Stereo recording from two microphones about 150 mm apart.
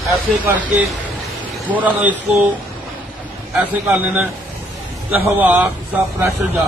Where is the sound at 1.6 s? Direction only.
10° right (ahead or behind).